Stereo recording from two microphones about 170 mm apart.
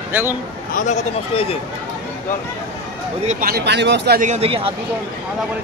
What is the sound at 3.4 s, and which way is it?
Speech, 75° right (ahead or behind).